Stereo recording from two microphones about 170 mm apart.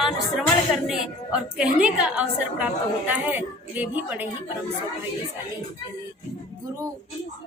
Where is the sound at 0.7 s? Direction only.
5° right (ahead or behind).